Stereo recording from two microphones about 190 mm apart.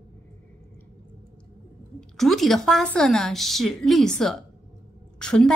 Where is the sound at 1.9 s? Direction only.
Centre (ahead or behind).